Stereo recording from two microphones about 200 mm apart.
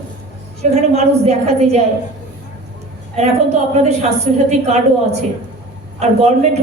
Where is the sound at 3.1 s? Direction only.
35° right (ahead or behind).